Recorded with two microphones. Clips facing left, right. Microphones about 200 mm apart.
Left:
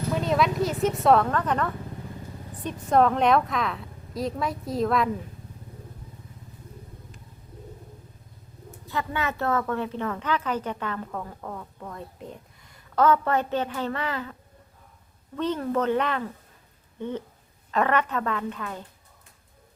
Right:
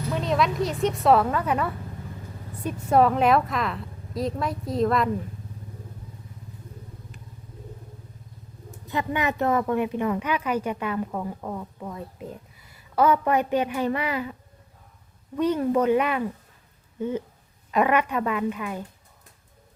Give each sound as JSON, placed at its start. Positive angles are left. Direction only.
{"t": 0.1, "sound": "a woman's voice", "side_deg": 0}
{"t": 8.9, "sound": "a woman's voice", "side_deg": -20}
{"t": 15.4, "sound": "a woman's voice", "side_deg": -10}